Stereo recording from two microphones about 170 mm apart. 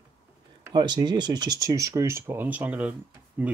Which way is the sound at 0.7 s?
25° right (ahead or behind).